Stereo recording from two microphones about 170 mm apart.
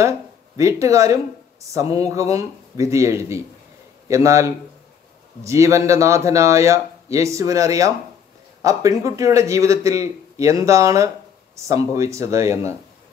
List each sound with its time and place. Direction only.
0.6 s a man's voice: 20° right (ahead or behind)